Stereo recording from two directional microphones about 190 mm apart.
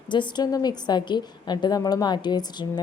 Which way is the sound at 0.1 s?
25° left (ahead or behind).